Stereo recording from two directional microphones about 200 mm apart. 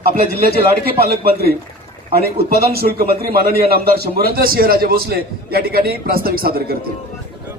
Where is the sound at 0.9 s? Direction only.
50° right (ahead or behind).